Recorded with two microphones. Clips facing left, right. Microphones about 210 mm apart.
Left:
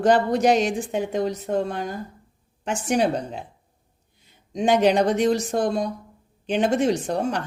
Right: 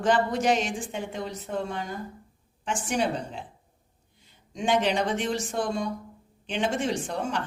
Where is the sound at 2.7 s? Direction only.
40° left (ahead or behind).